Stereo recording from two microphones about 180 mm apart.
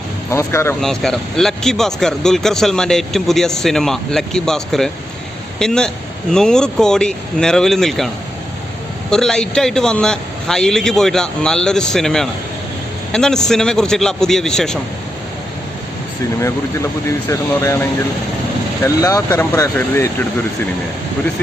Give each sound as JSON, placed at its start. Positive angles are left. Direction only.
{"t": 0.3, "sound": "speech", "side_deg": 15}
{"t": 0.8, "sound": "speech", "side_deg": 0}
{"t": 17.1, "sound": "speech", "side_deg": 15}